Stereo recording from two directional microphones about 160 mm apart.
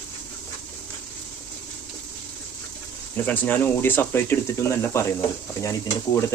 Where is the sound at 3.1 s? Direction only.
10° left (ahead or behind).